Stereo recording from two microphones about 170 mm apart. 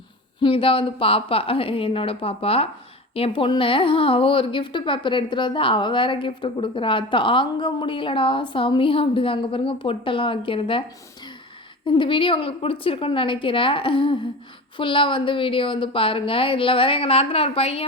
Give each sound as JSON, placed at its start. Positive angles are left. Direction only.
{"t": 0.3, "sound": "a woman's voice", "side_deg": 30}
{"t": 11.9, "sound": "a woman's voice", "side_deg": 30}